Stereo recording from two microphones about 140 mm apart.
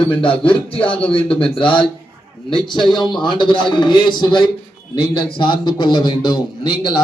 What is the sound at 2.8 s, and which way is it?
A man's voice, 30° left (ahead or behind).